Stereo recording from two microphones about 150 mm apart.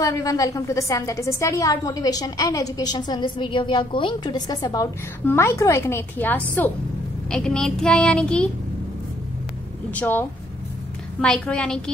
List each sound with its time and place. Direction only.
0.0 s a woman's voice: 20° left (ahead or behind)
5.2 s a woman's voice: 15° left (ahead or behind)
7.2 s child singing: 5° left (ahead or behind)
9.8 s speech: 10° left (ahead or behind)
11.1 s child singing: 5° left (ahead or behind)